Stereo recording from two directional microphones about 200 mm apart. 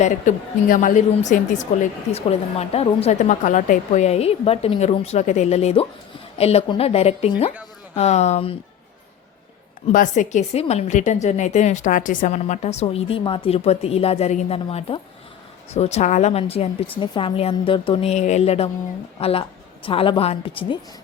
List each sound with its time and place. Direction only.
0.0 s a woman's voice: 40° left (ahead or behind)
9.8 s a woman's voice: 40° left (ahead or behind)